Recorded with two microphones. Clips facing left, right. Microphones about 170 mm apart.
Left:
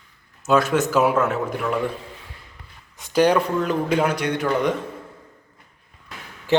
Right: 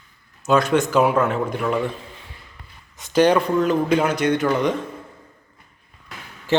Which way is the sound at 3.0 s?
10° left (ahead or behind).